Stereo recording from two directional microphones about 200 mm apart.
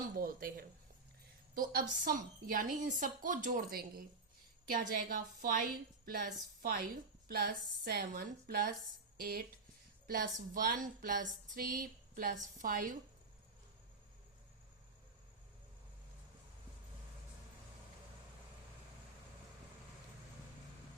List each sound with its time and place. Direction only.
0.2 s a woman's voice: 45° right (ahead or behind)